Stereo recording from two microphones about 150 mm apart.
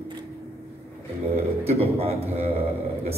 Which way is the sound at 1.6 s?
40° right (ahead or behind).